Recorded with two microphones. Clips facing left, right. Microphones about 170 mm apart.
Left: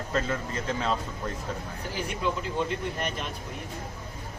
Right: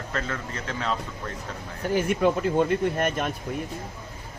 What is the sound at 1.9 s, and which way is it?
Speech, 55° right (ahead or behind).